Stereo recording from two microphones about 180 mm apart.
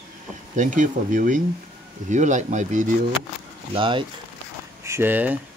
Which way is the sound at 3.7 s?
30° right (ahead or behind).